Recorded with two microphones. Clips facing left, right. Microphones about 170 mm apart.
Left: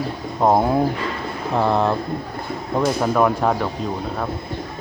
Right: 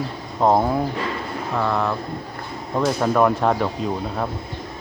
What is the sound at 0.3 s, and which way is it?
Speech, 10° left (ahead or behind).